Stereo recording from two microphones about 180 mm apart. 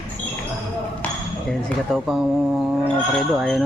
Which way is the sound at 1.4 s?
Centre (ahead or behind).